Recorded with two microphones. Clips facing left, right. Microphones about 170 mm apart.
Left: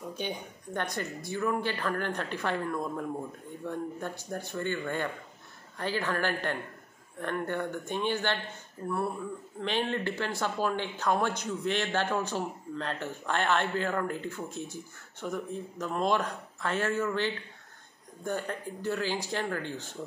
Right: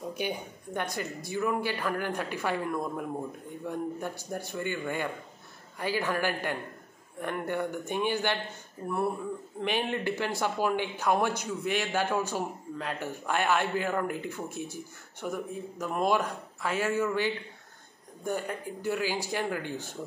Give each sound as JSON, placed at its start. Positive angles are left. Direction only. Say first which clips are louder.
{"t": 0.2, "sound": "speech", "louder": "right 2 dB", "side_deg": -10}